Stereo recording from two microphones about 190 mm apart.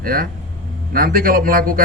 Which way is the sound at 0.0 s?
50° right (ahead or behind).